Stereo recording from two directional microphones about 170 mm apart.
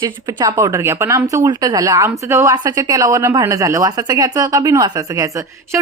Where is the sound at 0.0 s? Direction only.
25° right (ahead or behind).